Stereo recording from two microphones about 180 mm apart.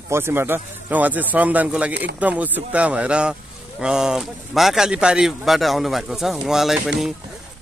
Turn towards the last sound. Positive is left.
turn(degrees=0)  # may be behind; listen again after turning